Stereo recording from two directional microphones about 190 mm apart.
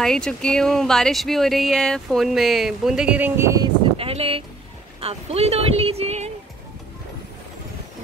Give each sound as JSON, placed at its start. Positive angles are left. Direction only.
{"t": 0.0, "sound": "speech", "side_deg": 5}
{"t": 4.0, "sound": "speech", "side_deg": -30}